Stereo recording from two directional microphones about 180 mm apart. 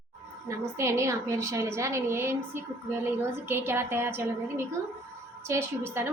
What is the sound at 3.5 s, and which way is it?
Speech, 15° right (ahead or behind).